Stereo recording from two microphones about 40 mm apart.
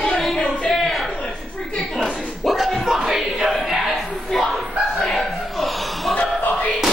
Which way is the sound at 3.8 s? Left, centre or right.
Centre.